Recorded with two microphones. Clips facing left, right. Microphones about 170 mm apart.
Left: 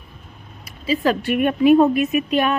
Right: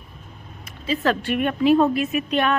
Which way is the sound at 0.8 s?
10° left (ahead or behind).